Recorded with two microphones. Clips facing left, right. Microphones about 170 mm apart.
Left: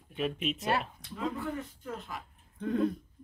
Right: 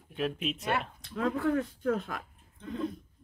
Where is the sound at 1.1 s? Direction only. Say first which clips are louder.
Right 6 dB; 70° right (ahead or behind).